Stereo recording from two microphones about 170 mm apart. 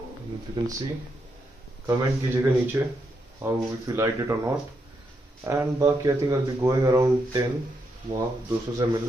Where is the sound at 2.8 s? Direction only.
15° right (ahead or behind).